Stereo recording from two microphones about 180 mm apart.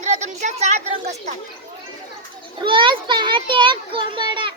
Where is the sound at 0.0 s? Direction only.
40° right (ahead or behind).